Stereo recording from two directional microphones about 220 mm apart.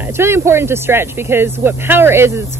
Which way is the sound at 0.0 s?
10° right (ahead or behind).